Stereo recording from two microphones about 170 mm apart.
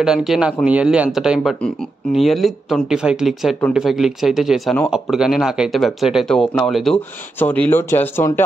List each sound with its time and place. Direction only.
0.0 s speech: centre (ahead or behind); by 8.5 s 15° left (ahead or behind)